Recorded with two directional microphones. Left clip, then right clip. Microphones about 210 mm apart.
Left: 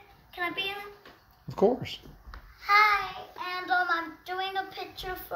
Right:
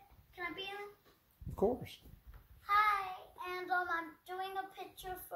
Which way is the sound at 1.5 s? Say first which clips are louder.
Left 10 dB; centre (ahead or behind).